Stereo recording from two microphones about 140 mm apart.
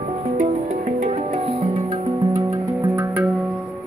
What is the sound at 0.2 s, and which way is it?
Music, 55° right (ahead or behind).